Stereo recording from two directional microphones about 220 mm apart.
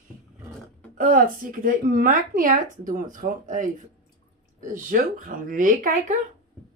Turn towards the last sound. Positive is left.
turn(degrees=-35)  # may be behind; listen again after turning